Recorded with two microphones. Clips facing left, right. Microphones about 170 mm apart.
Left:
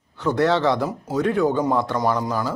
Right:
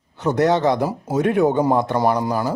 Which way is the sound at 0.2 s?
20° right (ahead or behind).